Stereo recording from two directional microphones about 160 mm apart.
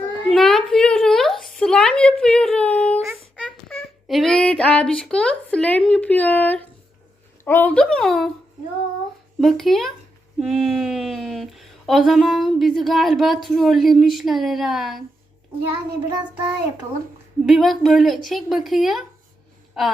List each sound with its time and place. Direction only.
0.3 s a sound: centre (ahead or behind)
3.0 s a sound: 15° right (ahead or behind)
3.4 s child singing: 5° left (ahead or behind)
7.4 s speech: 10° left (ahead or behind)
9.4 s speech: centre (ahead or behind)
16.3 s child singing: 10° right (ahead or behind)
17.4 s speech: centre (ahead or behind)